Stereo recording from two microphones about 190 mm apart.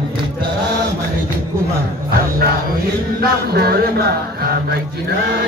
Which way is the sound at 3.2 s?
55° right (ahead or behind).